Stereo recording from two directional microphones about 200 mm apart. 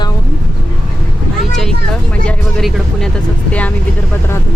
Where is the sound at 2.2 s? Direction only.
Centre (ahead or behind).